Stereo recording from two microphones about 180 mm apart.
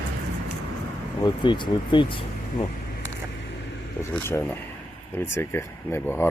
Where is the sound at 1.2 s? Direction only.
25° left (ahead or behind).